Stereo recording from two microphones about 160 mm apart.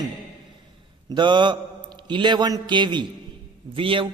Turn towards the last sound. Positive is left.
turn(degrees=-35)  # may be behind; listen again after turning